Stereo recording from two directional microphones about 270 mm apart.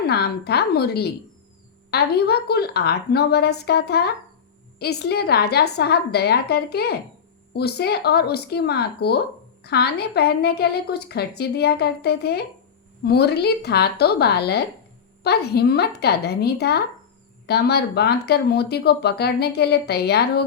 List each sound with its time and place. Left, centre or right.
0.0 s speech: left